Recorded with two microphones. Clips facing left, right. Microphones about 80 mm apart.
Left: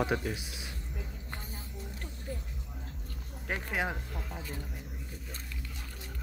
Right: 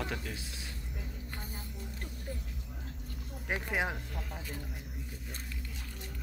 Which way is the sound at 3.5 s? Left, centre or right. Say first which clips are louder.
Even; centre.